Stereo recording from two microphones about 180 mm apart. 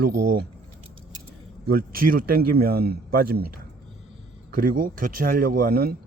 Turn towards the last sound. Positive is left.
turn(degrees=-55)  # may be behind; listen again after turning